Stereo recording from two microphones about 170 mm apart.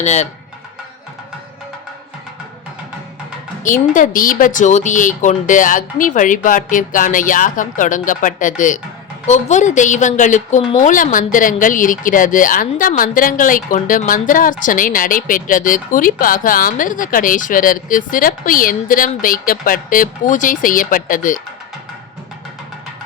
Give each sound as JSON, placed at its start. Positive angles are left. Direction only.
{"t": 0.0, "sound": "speech", "side_deg": 40}
{"t": 3.6, "sound": "a woman's voice", "side_deg": 50}